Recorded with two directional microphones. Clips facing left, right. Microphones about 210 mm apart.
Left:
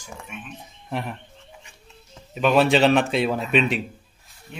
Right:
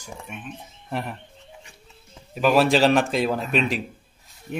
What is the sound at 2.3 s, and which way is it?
A man's voice, centre (ahead or behind).